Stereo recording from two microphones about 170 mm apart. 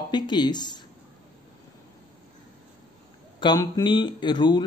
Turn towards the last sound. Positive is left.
turn(degrees=25)  # may be behind; listen again after turning